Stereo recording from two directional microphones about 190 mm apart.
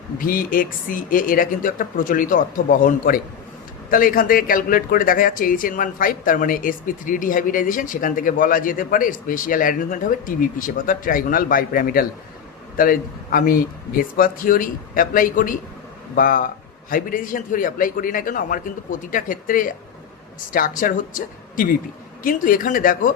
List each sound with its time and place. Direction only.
0.2 s speech: 50° left (ahead or behind)